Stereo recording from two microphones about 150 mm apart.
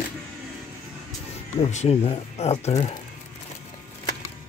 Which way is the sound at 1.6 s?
45° left (ahead or behind).